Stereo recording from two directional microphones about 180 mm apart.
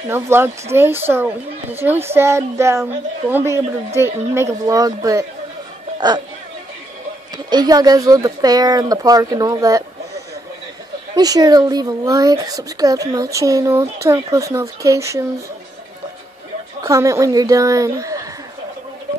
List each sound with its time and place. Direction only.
0.1 s a woman's voice: 15° right (ahead or behind)
7.4 s a child's voice: 20° right (ahead or behind)
11.1 s a child's voice: 20° right (ahead or behind)
16.8 s a woman's voice: 15° right (ahead or behind)